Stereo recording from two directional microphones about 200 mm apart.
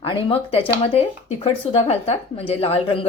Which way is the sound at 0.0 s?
25° left (ahead or behind).